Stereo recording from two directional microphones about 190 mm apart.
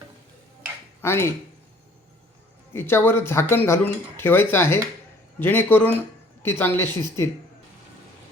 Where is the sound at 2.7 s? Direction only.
10° left (ahead or behind).